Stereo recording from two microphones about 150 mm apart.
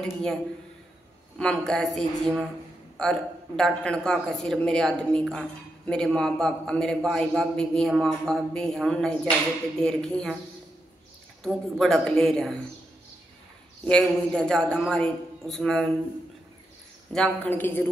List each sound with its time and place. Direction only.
0.0 s a man's voice: 5° left (ahead or behind)
1.4 s a man's voice: 5° left (ahead or behind)
11.4 s a man's voice: 5° left (ahead or behind)
13.8 s a man's voice: 5° left (ahead or behind)
17.1 s a man's voice: 10° left (ahead or behind)